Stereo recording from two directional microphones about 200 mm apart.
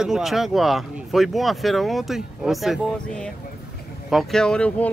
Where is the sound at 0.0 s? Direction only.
Centre (ahead or behind).